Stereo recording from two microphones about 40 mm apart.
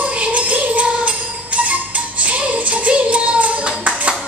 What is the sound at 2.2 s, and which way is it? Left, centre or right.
Music, right.